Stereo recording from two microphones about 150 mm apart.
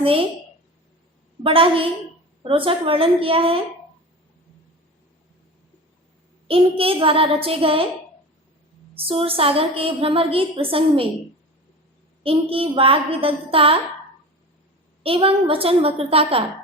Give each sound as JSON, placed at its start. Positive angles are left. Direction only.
{"t": 1.5, "sound": "a woman's voice", "side_deg": -35}
{"t": 6.5, "sound": "a woman's voice", "side_deg": -40}
{"t": 9.0, "sound": "a woman's voice", "side_deg": -40}
{"t": 12.2, "sound": "a woman's voice", "side_deg": -40}
{"t": 15.0, "sound": "a woman's voice", "side_deg": -40}